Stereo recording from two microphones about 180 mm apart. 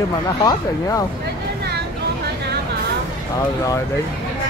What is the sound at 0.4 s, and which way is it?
Speech, 20° left (ahead or behind).